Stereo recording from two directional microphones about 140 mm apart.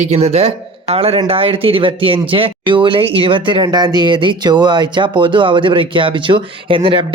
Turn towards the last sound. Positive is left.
turn(degrees=-35)  # may be behind; listen again after turning